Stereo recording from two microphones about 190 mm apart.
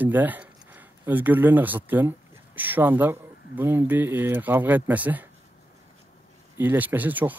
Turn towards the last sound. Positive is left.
turn(degrees=-10)  # may be behind; listen again after turning